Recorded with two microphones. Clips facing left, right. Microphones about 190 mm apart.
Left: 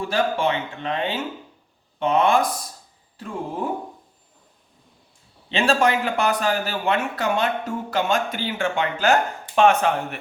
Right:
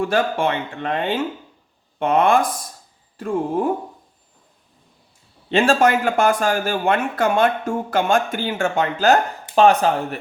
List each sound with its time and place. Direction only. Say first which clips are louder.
0.1 s a man's voice: right 2 dB; 55° right (ahead or behind)
5.5 s a man's voice: right 4 dB; 50° right (ahead or behind)